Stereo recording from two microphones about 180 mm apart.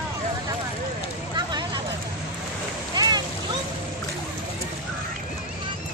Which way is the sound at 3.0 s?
25° right (ahead or behind).